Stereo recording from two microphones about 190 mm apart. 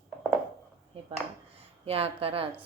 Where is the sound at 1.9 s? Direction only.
30° right (ahead or behind).